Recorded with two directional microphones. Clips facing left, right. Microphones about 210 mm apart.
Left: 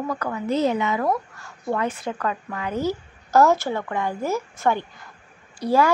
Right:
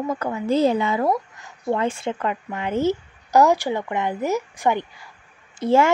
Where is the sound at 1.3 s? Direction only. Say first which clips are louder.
Right 2 dB; 20° right (ahead or behind).